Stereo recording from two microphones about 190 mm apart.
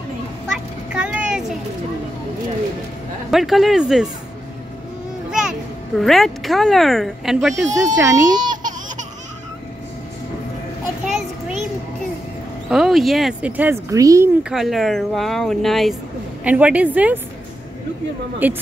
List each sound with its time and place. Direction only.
0.5 s vehicle: 5° right (ahead or behind)
3.3 s speech: centre (ahead or behind)
5.3 s a child's voice: centre (ahead or behind)
7.7 s speech: 15° right (ahead or behind)
11.1 s a sound: centre (ahead or behind)
12.6 s speech: centre (ahead or behind)
14.5 s speech: centre (ahead or behind)
18.4 s speech: 10° right (ahead or behind)